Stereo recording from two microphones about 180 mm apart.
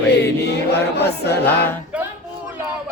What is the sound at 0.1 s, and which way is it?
Chant, 65° left (ahead or behind).